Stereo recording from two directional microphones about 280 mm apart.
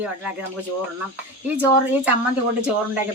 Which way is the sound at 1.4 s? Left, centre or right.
Centre.